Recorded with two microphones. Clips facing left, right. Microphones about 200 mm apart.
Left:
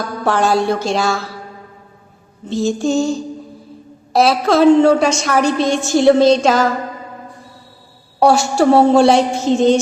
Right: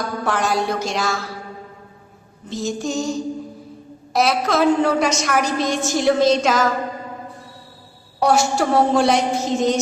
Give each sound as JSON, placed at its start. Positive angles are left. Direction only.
{"t": 0.3, "sound": "a woman's voice", "side_deg": 30}
{"t": 2.5, "sound": "a woman's voice", "side_deg": 30}
{"t": 8.2, "sound": "a woman's voice", "side_deg": 30}